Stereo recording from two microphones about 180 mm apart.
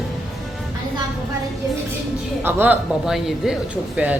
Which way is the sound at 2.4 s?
10° right (ahead or behind).